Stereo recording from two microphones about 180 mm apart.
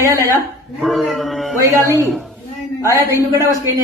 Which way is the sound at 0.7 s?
Centre (ahead or behind).